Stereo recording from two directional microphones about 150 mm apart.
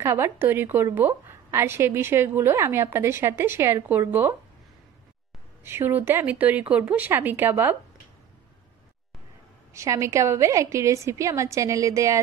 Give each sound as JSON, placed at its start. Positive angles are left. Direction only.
{"t": 0.0, "sound": "a woman's voice", "side_deg": -15}
{"t": 5.6, "sound": "a woman's voice", "side_deg": -15}
{"t": 9.8, "sound": "a woman's voice", "side_deg": -20}